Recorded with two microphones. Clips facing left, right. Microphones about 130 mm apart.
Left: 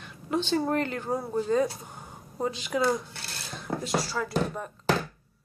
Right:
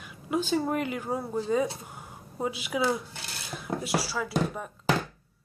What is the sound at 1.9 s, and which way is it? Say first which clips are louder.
Dishes: even; 5° right (ahead or behind).